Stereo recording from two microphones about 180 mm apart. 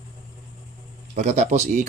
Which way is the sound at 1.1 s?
40° right (ahead or behind).